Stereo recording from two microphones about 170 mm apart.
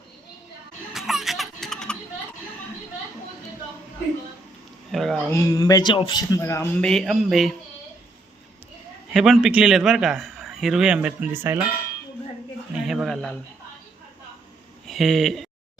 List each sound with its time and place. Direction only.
0.9 s music: centre (ahead or behind)
4.9 s a sound: centre (ahead or behind)
5.3 s speech: 20° left (ahead or behind)
6.8 s speech: centre (ahead or behind)
9.1 s speech: centre (ahead or behind)
12.7 s a sound: centre (ahead or behind)
14.8 s speech: centre (ahead or behind)